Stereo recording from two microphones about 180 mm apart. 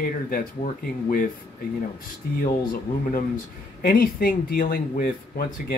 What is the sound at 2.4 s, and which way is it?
Speech, 55° left (ahead or behind).